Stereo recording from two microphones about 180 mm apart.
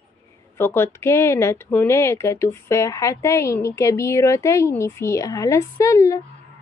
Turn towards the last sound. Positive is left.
turn(degrees=15)  # may be behind; listen again after turning